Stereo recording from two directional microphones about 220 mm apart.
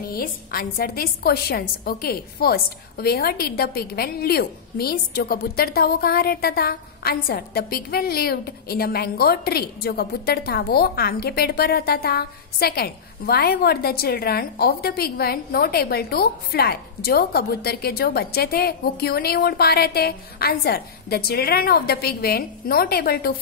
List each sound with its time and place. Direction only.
0.1 s a woman's voice: 40° left (ahead or behind)